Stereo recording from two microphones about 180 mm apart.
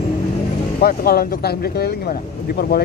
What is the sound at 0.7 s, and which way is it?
Speech, 60° left (ahead or behind).